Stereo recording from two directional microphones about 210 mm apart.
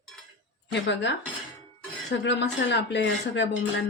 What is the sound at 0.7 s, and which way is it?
Speech, 55° left (ahead or behind).